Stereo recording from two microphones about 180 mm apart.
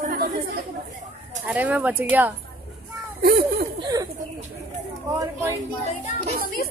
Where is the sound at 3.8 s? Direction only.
20° right (ahead or behind).